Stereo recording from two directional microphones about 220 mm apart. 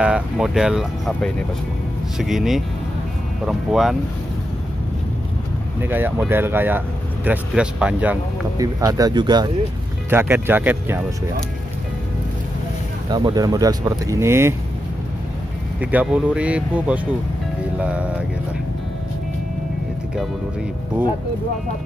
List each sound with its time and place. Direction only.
0.0 s speech: 5° right (ahead or behind)
5.8 s speech: 10° right (ahead or behind)
13.1 s speech: 20° right (ahead or behind)
15.8 s speech: 5° right (ahead or behind)
21.0 s speech: 5° right (ahead or behind)